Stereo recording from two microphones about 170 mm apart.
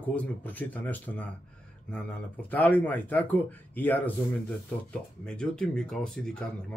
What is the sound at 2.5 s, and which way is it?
Speech, 10° left (ahead or behind).